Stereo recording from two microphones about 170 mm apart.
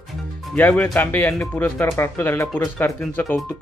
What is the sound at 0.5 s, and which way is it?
Speech, 10° left (ahead or behind).